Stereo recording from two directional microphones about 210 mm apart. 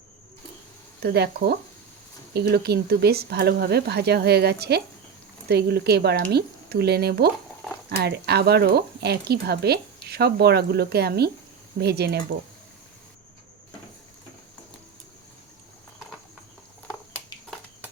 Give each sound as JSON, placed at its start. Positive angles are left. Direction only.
{"t": 1.0, "sound": "speech", "side_deg": -50}